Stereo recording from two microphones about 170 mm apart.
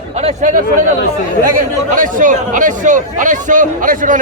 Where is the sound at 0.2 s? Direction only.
45° right (ahead or behind).